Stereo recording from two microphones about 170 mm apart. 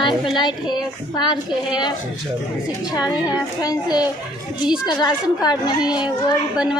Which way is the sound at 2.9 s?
25° left (ahead or behind).